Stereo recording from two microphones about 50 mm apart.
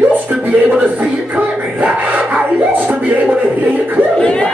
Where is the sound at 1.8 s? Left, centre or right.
Right.